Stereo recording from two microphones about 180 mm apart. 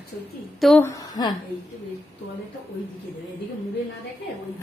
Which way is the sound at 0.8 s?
20° left (ahead or behind).